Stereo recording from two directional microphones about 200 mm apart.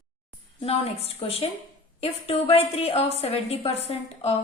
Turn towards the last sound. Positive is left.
turn(degrees=30)  # may be behind; listen again after turning